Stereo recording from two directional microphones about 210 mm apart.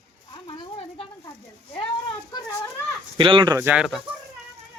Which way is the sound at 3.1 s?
25° right (ahead or behind).